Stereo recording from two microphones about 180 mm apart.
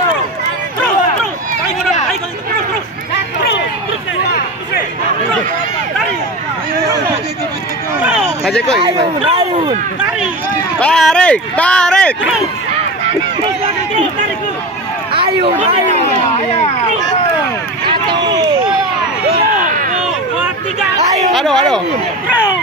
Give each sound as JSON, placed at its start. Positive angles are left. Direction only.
{"t": 8.0, "sound": "a sound", "side_deg": -5}
{"t": 8.7, "sound": "speech", "side_deg": -25}
{"t": 10.8, "sound": "speech", "side_deg": 5}
{"t": 15.1, "sound": "speech", "side_deg": -30}
{"t": 17.8, "sound": "speech", "side_deg": -25}
{"t": 19.6, "sound": "a sound", "side_deg": -50}
{"t": 21.3, "sound": "speech", "side_deg": 0}